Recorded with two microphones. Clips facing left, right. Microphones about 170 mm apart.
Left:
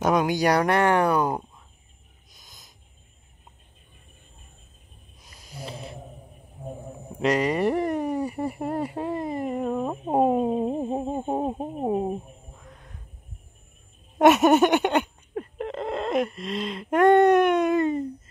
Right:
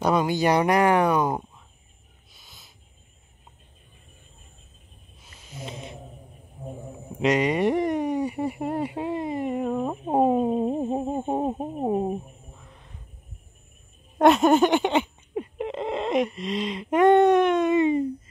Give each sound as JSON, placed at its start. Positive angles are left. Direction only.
{"t": 0.6, "sound": "speech", "side_deg": -10}
{"t": 5.4, "sound": "snoring", "side_deg": 35}
{"t": 7.3, "sound": "speech", "side_deg": -10}
{"t": 14.1, "sound": "a sound", "side_deg": 5}
{"t": 16.3, "sound": "speech", "side_deg": 0}